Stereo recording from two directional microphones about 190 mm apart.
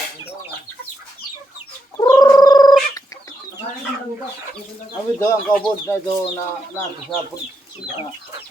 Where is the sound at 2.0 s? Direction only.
20° left (ahead or behind).